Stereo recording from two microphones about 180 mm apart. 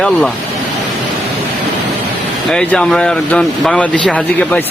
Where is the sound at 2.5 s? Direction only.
5° left (ahead or behind).